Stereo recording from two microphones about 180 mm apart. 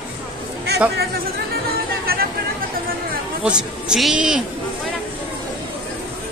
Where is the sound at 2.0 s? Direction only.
55° right (ahead or behind).